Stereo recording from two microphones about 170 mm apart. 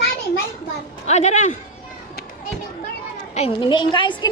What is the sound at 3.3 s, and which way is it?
Speech, 35° left (ahead or behind).